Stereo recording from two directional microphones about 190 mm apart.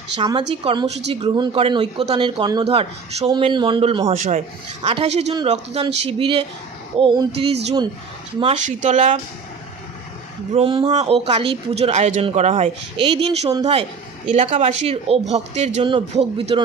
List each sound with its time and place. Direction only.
0.2 s a man's voice: 25° right (ahead or behind)
10.5 s speech: 30° right (ahead or behind)
13.5 s a man's voice: 20° right (ahead or behind)
14.3 s a man's voice: 35° right (ahead or behind)